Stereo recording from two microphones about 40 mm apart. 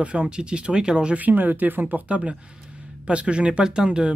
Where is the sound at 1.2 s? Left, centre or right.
Right.